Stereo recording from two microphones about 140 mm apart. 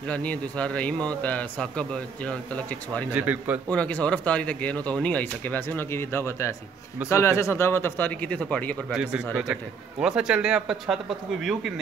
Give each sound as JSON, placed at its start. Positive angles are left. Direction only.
{"t": 0.0, "sound": "a man's voice", "side_deg": 10}
{"t": 3.1, "sound": "a man's voice", "side_deg": -10}
{"t": 3.7, "sound": "a man's voice", "side_deg": 10}
{"t": 8.9, "sound": "a man's voice", "side_deg": -5}